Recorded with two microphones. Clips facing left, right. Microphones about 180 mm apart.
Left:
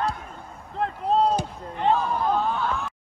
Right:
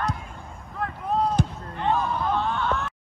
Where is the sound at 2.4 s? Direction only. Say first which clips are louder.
Even; 5° left (ahead or behind).